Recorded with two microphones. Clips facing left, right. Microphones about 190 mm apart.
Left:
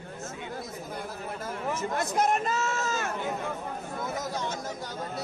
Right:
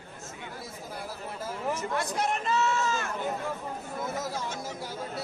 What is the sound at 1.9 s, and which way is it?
Speech, 45° left (ahead or behind).